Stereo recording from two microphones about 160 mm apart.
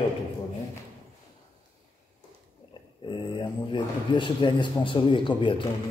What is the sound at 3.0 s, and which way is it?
Speech, 30° left (ahead or behind).